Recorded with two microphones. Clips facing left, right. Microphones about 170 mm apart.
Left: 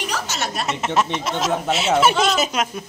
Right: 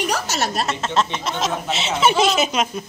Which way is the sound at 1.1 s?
Centre (ahead or behind).